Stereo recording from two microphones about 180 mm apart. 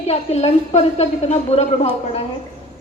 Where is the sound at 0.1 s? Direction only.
35° left (ahead or behind).